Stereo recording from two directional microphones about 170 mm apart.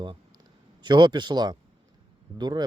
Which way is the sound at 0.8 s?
25° right (ahead or behind).